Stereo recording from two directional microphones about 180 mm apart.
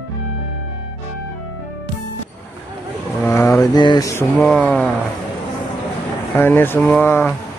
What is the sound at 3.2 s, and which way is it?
Mantra, 15° left (ahead or behind).